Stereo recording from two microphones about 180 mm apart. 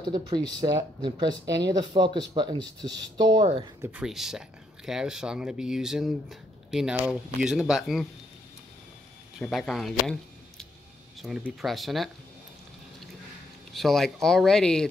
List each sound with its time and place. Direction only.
0.1 s speech: 25° right (ahead or behind)
3.8 s speech: 5° right (ahead or behind)
9.4 s speech: centre (ahead or behind)
11.1 s speech: centre (ahead or behind)
13.7 s speech: centre (ahead or behind)